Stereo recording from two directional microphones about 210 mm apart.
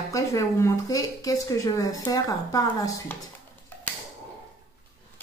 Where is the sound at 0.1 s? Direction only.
15° left (ahead or behind).